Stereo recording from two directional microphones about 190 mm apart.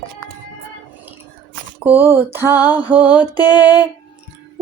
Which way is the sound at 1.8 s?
10° right (ahead or behind).